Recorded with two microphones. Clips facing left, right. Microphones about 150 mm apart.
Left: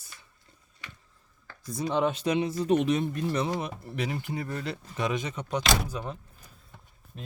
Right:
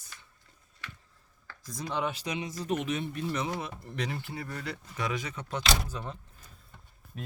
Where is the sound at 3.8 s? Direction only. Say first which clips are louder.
Left 3 dB; 5° left (ahead or behind).